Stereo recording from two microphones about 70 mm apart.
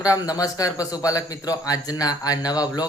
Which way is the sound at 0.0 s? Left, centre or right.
Left.